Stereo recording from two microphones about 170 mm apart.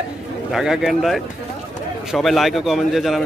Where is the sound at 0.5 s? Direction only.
Centre (ahead or behind).